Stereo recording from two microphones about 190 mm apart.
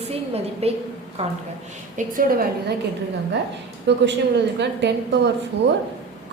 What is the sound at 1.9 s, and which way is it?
Speech, 45° right (ahead or behind).